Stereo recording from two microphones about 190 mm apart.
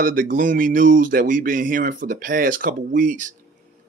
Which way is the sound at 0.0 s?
50° right (ahead or behind).